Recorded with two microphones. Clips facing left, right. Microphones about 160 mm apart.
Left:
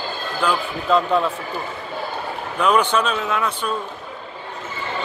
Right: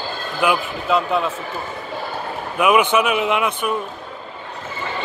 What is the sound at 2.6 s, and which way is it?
A man's voice, 10° right (ahead or behind).